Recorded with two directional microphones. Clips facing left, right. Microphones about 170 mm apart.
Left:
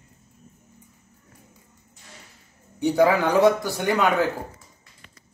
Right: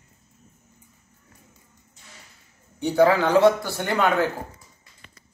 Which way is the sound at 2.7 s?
15° left (ahead or behind).